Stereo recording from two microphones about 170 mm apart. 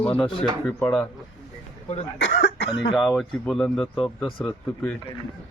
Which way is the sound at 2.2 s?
80° left.